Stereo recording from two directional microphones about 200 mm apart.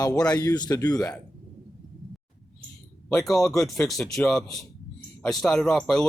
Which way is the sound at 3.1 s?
Centre (ahead or behind).